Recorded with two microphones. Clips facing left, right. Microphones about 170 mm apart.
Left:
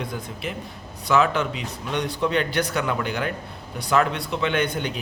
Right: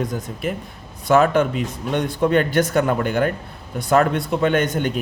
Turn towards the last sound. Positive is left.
turn(degrees=-45)  # may be behind; listen again after turning